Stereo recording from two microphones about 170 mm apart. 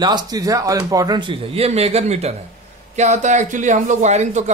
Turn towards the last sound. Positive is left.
turn(degrees=-40)  # may be behind; listen again after turning